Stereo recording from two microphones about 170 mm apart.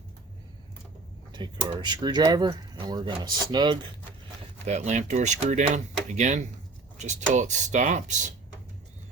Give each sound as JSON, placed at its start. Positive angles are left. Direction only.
{"t": 1.3, "sound": "speech", "side_deg": -25}
{"t": 4.6, "sound": "speech", "side_deg": -40}